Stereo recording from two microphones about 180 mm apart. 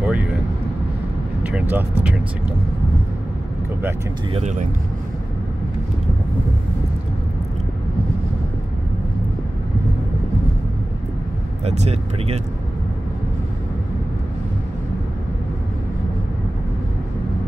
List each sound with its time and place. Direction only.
0.0 s vehicle: 5° right (ahead or behind)
1.4 s speech: 10° right (ahead or behind)
4.3 s speech: 40° right (ahead or behind)
11.6 s speech: 35° right (ahead or behind)